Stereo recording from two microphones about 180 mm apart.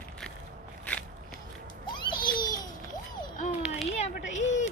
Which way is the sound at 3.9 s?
40° left (ahead or behind).